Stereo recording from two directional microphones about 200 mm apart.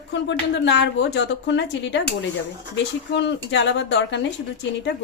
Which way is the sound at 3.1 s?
60° left (ahead or behind).